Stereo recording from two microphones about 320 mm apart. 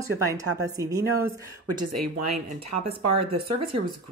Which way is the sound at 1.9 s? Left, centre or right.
Right.